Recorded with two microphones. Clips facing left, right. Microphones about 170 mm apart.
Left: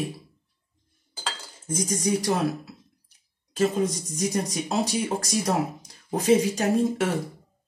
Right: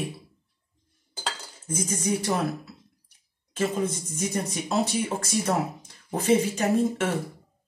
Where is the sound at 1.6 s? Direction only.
35° left (ahead or behind).